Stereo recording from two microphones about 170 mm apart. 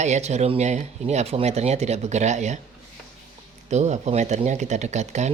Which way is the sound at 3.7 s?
40° right (ahead or behind).